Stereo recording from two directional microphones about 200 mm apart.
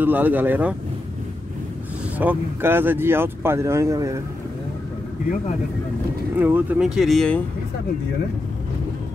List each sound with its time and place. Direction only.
0.0 s speech: 10° right (ahead or behind)
2.1 s speech: 10° right (ahead or behind)
6.3 s speech: 10° right (ahead or behind)